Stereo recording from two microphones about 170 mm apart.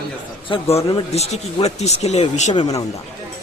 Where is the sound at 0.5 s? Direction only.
35° left (ahead or behind).